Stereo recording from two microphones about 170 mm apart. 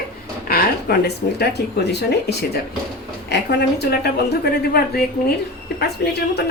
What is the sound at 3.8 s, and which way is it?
Speech, 70° left (ahead or behind).